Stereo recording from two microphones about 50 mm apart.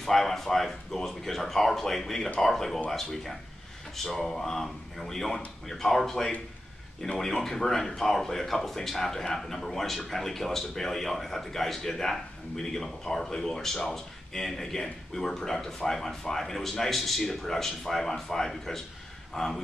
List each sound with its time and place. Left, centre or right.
0.0 s speech: centre